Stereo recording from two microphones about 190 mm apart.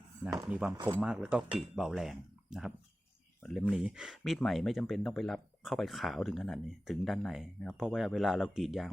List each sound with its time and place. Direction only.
0.4 s speech: 5° right (ahead or behind)